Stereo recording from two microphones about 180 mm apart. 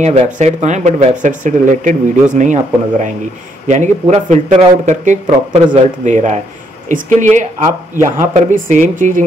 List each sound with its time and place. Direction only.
0.0 s speech: 35° right (ahead or behind)